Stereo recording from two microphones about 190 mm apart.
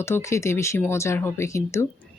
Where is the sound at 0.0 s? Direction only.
15° left (ahead or behind).